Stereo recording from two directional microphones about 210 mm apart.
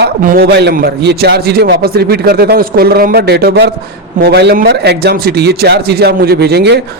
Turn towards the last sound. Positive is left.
turn(degrees=-50)  # may be behind; listen again after turning